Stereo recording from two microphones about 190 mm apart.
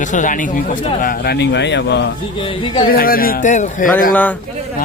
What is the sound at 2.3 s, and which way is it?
Speech, 25° left (ahead or behind).